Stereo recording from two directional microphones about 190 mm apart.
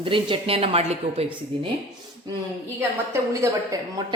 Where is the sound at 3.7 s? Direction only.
15° right (ahead or behind).